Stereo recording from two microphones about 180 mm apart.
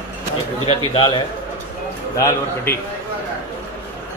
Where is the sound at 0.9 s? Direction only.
25° left (ahead or behind).